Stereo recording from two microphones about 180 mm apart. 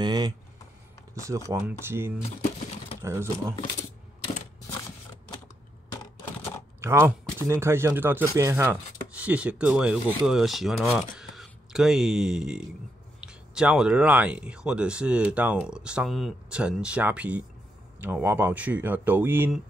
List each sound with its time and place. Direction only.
0.0 s a sound: 25° right (ahead or behind)
1.2 s speech: 15° right (ahead or behind)
6.8 s speech: 15° right (ahead or behind)